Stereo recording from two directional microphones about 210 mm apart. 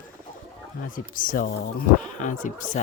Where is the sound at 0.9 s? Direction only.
40° left (ahead or behind).